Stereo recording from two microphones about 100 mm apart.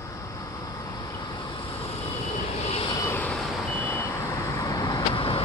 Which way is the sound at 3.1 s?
15° left (ahead or behind).